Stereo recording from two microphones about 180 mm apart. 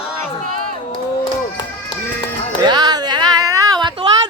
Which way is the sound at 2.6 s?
25° right (ahead or behind).